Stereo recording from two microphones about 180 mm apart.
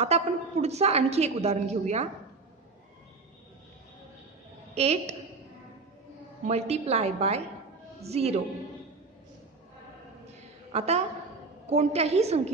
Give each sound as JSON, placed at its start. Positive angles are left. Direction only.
{"t": 0.0, "sound": "a woman's voice", "side_deg": -35}
{"t": 4.7, "sound": "a woman's voice", "side_deg": -35}
{"t": 6.4, "sound": "a woman's voice", "side_deg": -35}
{"t": 10.2, "sound": "a sound", "side_deg": -35}
{"t": 11.6, "sound": "a woman's voice", "side_deg": -40}